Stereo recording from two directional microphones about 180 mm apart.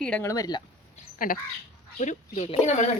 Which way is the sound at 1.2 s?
55° left (ahead or behind).